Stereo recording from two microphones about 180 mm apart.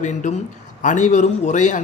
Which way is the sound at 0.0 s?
40° left (ahead or behind).